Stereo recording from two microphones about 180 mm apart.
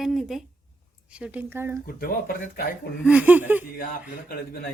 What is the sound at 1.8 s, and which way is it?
Speech, 55° left (ahead or behind).